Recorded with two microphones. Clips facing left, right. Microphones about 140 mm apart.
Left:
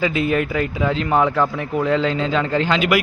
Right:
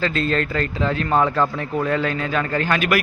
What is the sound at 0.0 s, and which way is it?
Speech, 15° left (ahead or behind).